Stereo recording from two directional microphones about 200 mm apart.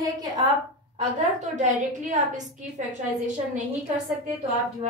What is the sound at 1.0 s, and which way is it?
A woman's voice, 35° right (ahead or behind).